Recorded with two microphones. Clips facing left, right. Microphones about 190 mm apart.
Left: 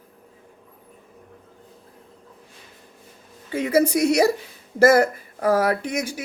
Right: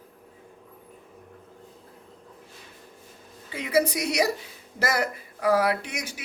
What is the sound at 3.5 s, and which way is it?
Speech, 45° left (ahead or behind).